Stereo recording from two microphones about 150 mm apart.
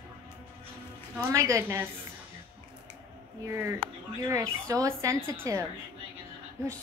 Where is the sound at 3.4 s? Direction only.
15° right (ahead or behind).